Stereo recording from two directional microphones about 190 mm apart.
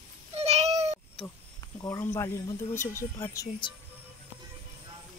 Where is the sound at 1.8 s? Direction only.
15° left (ahead or behind).